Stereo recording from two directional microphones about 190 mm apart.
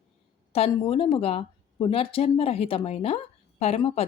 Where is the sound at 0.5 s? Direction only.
30° left (ahead or behind).